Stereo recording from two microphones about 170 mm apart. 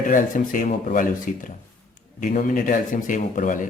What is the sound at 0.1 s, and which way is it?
Speech, 50° left (ahead or behind).